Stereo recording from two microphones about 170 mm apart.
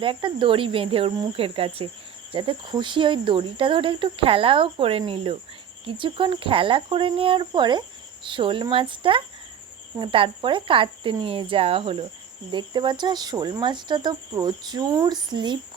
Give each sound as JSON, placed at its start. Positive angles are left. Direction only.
{"t": 0.0, "sound": "speech", "side_deg": -30}